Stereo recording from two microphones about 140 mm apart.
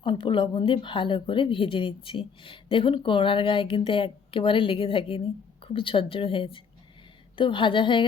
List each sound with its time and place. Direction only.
0.0 s a woman's voice: 40° left (ahead or behind)